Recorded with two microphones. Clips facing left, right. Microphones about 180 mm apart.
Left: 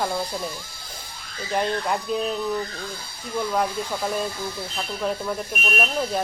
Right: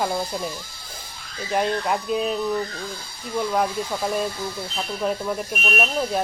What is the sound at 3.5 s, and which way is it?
Speech, 5° right (ahead or behind).